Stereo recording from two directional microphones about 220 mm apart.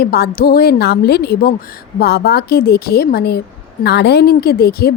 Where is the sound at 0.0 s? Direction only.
45° left (ahead or behind).